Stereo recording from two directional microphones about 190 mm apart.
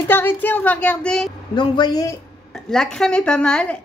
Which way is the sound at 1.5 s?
25° left (ahead or behind).